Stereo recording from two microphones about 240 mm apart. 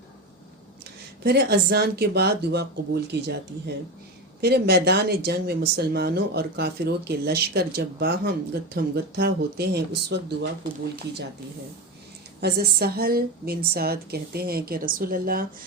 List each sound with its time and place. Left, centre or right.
1.2 s speech: right
4.4 s speech: right
12.4 s a woman's voice: right